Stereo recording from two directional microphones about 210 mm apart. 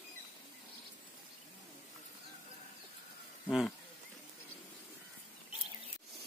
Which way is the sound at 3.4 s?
Centre (ahead or behind).